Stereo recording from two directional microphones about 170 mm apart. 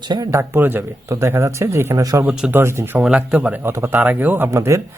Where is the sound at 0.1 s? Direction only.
20° right (ahead or behind).